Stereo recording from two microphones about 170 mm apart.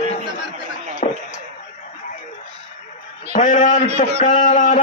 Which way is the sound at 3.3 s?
50° left (ahead or behind).